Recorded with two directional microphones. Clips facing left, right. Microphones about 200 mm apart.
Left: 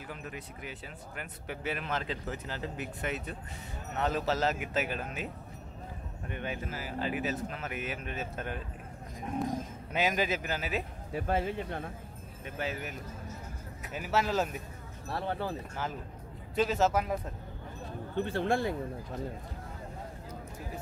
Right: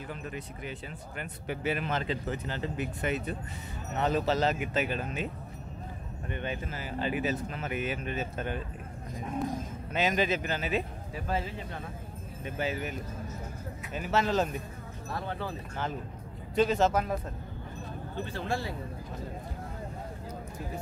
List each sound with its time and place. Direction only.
0.1 s speech: 5° left (ahead or behind)
9.9 s speech: 10° left (ahead or behind)
11.1 s speech: 60° left (ahead or behind)
12.4 s speech: centre (ahead or behind)
13.9 s speech: 5° left (ahead or behind)
15.0 s speech: 35° left (ahead or behind)
16.5 s speech: 5° left (ahead or behind)
18.1 s speech: 55° left (ahead or behind)